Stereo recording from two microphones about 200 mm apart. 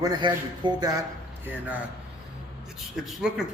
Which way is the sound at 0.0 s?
20° right (ahead or behind).